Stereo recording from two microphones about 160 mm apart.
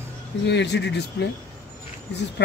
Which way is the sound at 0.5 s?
90° left.